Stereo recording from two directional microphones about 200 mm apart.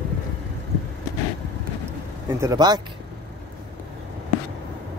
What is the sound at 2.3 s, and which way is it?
Speech, 20° right (ahead or behind).